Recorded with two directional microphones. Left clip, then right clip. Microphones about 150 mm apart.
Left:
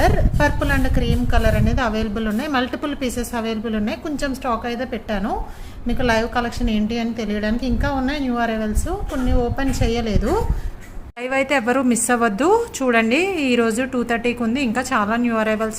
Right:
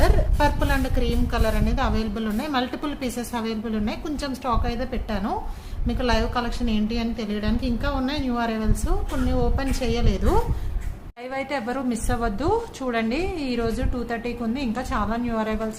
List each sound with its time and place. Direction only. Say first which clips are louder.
0.0 s a woman's voice: left 4 dB; 15° left (ahead or behind)
11.2 s a woman's voice: left 9 dB; 40° left (ahead or behind)